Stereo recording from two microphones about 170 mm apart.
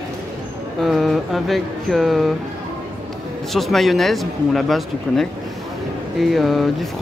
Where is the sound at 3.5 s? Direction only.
Centre (ahead or behind).